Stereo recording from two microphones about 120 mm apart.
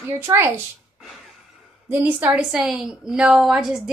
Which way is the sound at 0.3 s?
30° right (ahead or behind).